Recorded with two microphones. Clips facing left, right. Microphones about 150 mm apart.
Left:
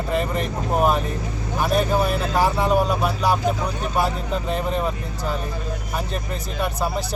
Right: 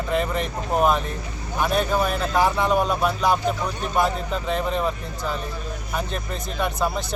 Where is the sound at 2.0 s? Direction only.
5° left (ahead or behind).